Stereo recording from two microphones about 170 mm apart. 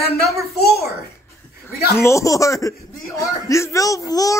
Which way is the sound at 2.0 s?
15° left (ahead or behind).